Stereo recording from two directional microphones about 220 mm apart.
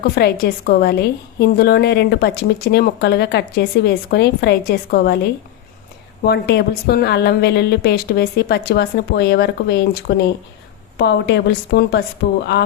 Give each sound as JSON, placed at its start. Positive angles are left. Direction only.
{"t": 0.2, "sound": "a woman's voice", "side_deg": 45}